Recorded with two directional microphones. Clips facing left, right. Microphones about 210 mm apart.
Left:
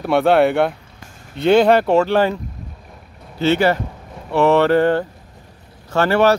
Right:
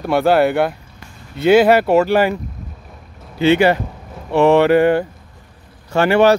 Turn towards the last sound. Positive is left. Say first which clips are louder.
# right 2 dB
turn(degrees=-15)  # may be behind; listen again after turning